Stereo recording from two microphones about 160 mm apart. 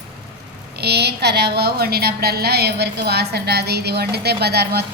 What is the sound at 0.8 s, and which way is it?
A woman's voice, 90° right.